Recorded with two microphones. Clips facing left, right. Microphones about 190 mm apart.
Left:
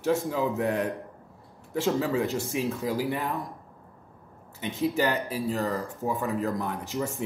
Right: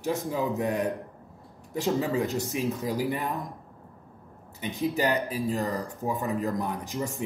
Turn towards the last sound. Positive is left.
turn(degrees=-15)  # may be behind; listen again after turning